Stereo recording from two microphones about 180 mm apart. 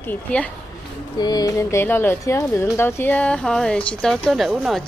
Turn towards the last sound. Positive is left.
turn(degrees=0)  # may be behind; listen again after turning